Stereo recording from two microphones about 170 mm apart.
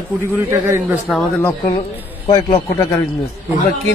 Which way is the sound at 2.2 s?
20° left (ahead or behind).